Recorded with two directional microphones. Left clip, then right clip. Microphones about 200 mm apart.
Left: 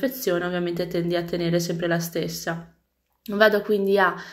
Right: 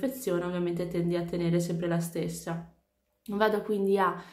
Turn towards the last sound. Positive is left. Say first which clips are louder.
# left 7 dB
turn(degrees=15)  # may be behind; listen again after turning